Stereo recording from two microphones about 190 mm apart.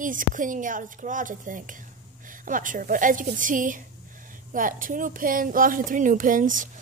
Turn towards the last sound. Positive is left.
turn(degrees=-45)  # may be behind; listen again after turning